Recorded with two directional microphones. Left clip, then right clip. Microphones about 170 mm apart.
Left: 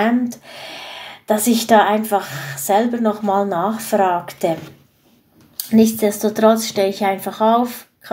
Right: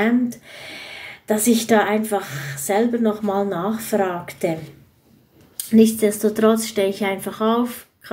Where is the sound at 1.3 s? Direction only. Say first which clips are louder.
Left 2 dB; 45° left (ahead or behind).